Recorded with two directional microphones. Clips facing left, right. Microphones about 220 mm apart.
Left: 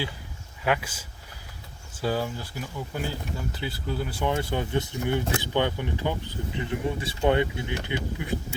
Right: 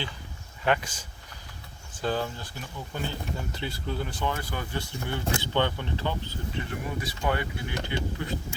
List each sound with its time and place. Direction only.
0.6 s speech: 5° left (ahead or behind)
4.3 s speech: 25° left (ahead or behind)